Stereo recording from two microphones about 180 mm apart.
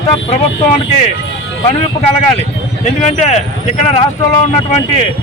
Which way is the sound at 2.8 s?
40° left (ahead or behind).